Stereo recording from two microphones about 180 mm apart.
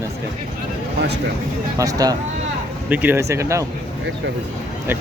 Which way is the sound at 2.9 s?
10° right (ahead or behind).